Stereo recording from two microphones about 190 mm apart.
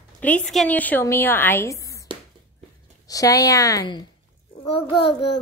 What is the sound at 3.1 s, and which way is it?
A woman's voice, 20° left (ahead or behind).